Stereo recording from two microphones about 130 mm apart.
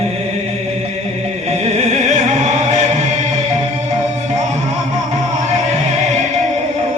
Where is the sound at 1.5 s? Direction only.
65° right (ahead or behind).